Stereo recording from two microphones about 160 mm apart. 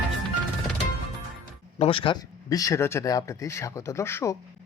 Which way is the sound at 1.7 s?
35° left (ahead or behind).